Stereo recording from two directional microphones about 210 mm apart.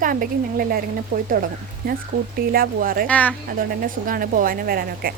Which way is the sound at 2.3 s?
45° right (ahead or behind).